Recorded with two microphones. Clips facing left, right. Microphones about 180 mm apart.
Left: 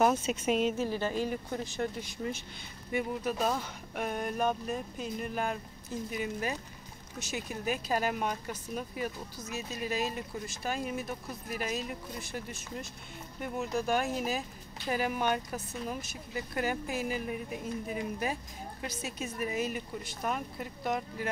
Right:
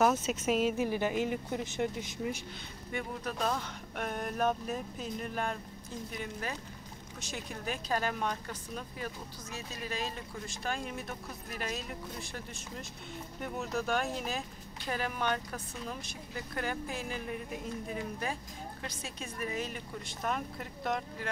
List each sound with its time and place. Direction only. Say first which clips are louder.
0.2 s speech: left 1 dB; 5° right (ahead or behind)
0.7 s speech: right 1 dB; 15° right (ahead or behind)
2.9 s speech: left 5 dB; 5° left (ahead or behind)
7.2 s speech: left 4 dB; 5° left (ahead or behind)